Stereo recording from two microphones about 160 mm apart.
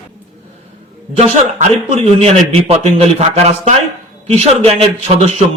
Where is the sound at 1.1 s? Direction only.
45° right (ahead or behind).